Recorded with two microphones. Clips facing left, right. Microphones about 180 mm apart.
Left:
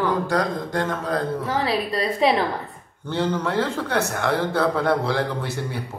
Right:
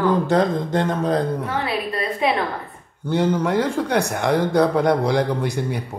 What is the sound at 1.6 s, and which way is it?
Speech, 30° left (ahead or behind).